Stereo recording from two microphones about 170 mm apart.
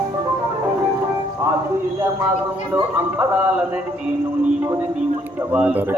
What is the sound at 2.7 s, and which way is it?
Speech, 10° right (ahead or behind).